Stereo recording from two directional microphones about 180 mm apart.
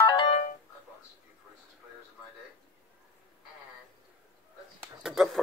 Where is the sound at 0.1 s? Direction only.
30° left (ahead or behind).